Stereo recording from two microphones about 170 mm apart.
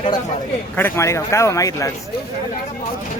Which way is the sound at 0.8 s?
15° left (ahead or behind).